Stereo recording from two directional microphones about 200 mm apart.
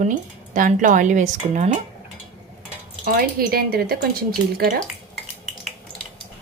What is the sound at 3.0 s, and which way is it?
Speech, 50° right (ahead or behind).